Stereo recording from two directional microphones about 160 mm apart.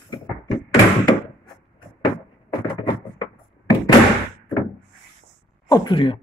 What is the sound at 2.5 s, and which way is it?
Door, 25° left (ahead or behind).